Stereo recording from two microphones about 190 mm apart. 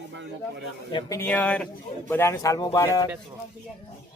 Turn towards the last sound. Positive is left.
turn(degrees=15)  # may be behind; listen again after turning